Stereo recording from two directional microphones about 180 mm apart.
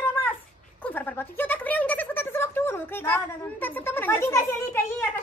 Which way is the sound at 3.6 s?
10° left (ahead or behind).